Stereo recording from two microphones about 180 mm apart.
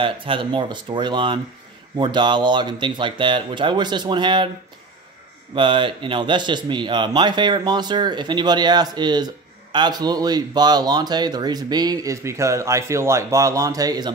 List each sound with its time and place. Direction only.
0.0 s a man's voice: 30° right (ahead or behind)
5.5 s a man's voice: 25° right (ahead or behind)